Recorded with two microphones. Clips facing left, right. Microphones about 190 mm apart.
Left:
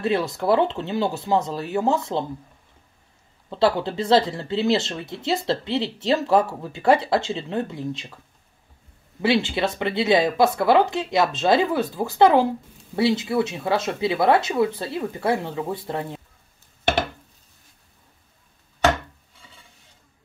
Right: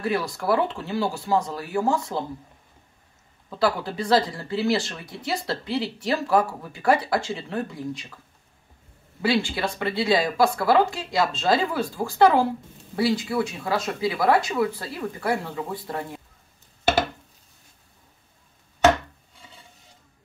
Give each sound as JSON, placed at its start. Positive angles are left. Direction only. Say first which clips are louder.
{"t": 0.0, "sound": "speech", "louder": "left 3 dB", "side_deg": 25}
{"t": 3.4, "sound": "speech", "louder": "left 4 dB", "side_deg": 25}
{"t": 9.2, "sound": "speech", "louder": "left 3 dB", "side_deg": 20}